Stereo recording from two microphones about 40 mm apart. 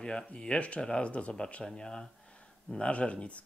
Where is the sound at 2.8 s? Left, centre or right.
Left.